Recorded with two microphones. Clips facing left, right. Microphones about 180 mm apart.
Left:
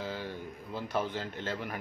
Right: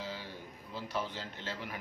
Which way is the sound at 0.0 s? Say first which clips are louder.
Left 5 dB; 50° left (ahead or behind).